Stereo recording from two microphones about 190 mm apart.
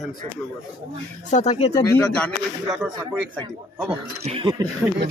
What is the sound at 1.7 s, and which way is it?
Speech, 5° left (ahead or behind).